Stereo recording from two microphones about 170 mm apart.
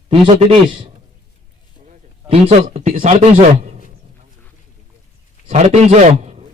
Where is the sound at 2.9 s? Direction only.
50° right (ahead or behind).